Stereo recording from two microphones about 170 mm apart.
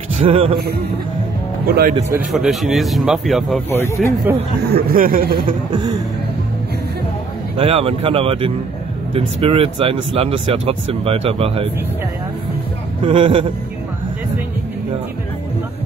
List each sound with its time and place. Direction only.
0.2 s speech: 30° right (ahead or behind)
1.7 s speech: 60° right (ahead or behind)
2.3 s a man's voice: centre (ahead or behind)
3.7 s speech: 15° left (ahead or behind)
4.3 s speech: 15° right (ahead or behind)
4.6 s speech: 65° right (ahead or behind)
7.5 s speech: 35° right (ahead or behind)
13.0 s speech: 30° right (ahead or behind)